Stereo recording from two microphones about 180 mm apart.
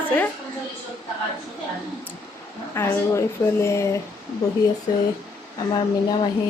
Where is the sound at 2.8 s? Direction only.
15° left (ahead or behind).